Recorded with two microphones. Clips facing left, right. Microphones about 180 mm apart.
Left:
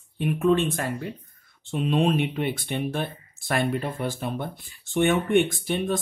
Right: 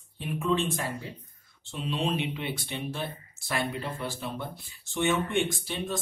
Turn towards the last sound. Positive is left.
turn(degrees=55)  # may be behind; listen again after turning